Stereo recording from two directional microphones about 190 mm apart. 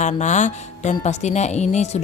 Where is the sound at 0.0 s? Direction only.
40° left (ahead or behind).